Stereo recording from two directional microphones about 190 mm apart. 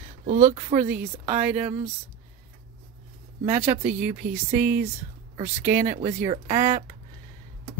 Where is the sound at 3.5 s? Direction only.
35° right (ahead or behind).